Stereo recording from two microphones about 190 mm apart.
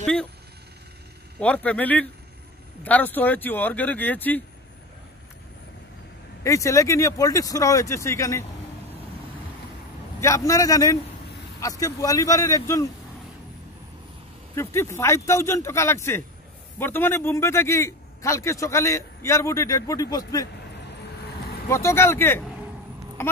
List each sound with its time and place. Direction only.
0.0 s speech: 5° left (ahead or behind)
1.4 s a man's voice: 5° left (ahead or behind)
6.4 s a man's voice: 15° left (ahead or behind)
10.2 s a man's voice: 15° left (ahead or behind)
14.5 s a man's voice: 15° left (ahead or behind)
21.6 s a man's voice: 15° left (ahead or behind)